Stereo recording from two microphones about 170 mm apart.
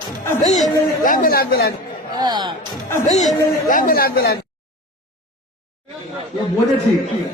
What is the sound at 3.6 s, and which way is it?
Speech, 55° left (ahead or behind).